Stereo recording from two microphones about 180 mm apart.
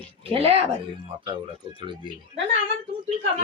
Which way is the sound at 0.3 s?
35° right (ahead or behind).